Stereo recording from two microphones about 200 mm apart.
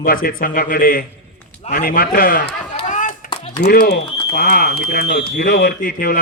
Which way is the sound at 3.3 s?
25° left (ahead or behind).